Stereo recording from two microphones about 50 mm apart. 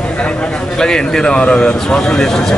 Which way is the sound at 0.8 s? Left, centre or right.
Centre.